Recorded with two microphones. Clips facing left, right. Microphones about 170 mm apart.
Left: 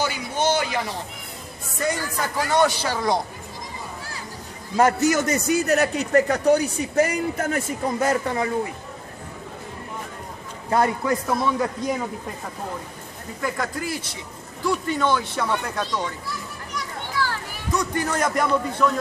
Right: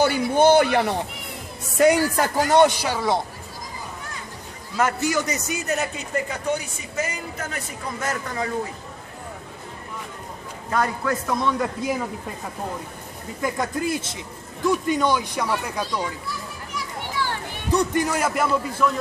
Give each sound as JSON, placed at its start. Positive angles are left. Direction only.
{"t": 0.0, "sound": "a man's voice", "side_deg": -55}
{"t": 1.8, "sound": "speech", "side_deg": -70}
{"t": 2.4, "sound": "speech", "side_deg": -20}
{"t": 2.8, "sound": "speech", "side_deg": -5}
{"t": 4.7, "sound": "a man's voice", "side_deg": 40}
{"t": 8.0, "sound": "speech", "side_deg": 30}
{"t": 11.1, "sound": "speech", "side_deg": 10}
{"t": 11.6, "sound": "a man's voice", "side_deg": -5}
{"t": 13.4, "sound": "speech", "side_deg": -20}
{"t": 17.2, "sound": "children playing", "side_deg": -25}
{"t": 17.9, "sound": "a man's voice", "side_deg": -10}